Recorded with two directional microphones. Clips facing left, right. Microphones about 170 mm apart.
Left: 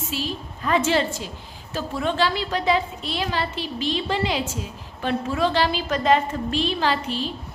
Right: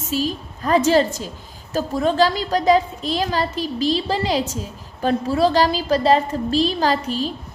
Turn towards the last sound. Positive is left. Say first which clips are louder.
# right 4 dB
turn(degrees=-40)  # may be behind; listen again after turning